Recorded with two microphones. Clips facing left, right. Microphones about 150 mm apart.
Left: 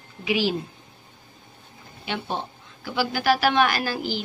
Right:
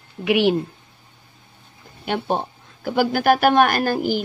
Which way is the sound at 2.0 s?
50° right (ahead or behind).